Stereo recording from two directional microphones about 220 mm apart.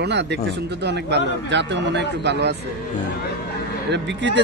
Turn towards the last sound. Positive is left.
turn(degrees=-55)  # may be behind; listen again after turning